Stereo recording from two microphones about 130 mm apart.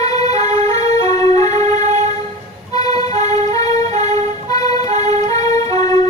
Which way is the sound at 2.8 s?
30° left (ahead or behind).